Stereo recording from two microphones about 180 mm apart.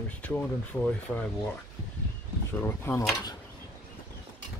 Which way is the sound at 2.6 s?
15° left (ahead or behind).